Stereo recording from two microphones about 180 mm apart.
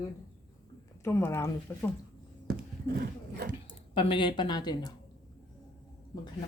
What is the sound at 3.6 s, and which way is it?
Speech, 30° left (ahead or behind).